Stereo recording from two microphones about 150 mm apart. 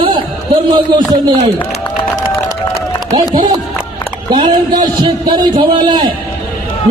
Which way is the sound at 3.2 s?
25° right (ahead or behind).